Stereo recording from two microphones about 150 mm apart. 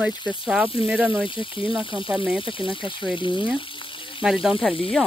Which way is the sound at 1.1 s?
35° left (ahead or behind).